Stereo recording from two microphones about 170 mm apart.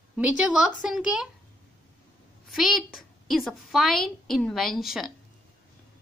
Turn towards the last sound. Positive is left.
turn(degrees=0)  # may be behind; listen again after turning